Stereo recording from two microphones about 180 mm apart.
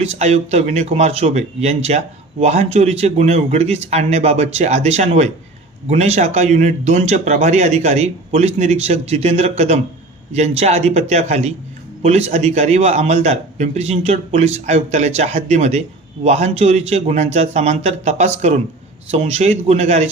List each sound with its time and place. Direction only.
0.0 s a man's voice: 35° right (ahead or behind)